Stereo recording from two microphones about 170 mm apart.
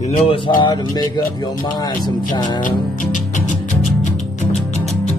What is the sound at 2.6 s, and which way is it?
Music, 50° left (ahead or behind).